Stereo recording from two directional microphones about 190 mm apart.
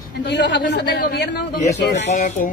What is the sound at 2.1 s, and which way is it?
Speech, 40° left (ahead or behind).